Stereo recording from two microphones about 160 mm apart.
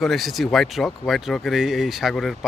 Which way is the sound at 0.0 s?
Centre (ahead or behind).